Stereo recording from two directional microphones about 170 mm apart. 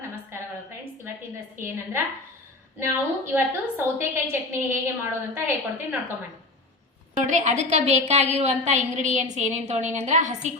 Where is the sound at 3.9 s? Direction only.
15° right (ahead or behind).